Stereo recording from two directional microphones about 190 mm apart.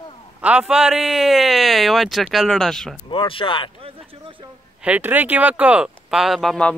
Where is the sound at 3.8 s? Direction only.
25° right (ahead or behind).